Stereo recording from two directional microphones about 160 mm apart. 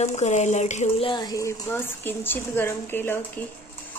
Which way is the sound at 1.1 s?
25° left (ahead or behind).